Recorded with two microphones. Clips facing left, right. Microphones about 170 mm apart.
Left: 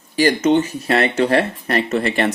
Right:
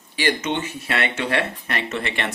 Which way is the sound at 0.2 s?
40° left (ahead or behind).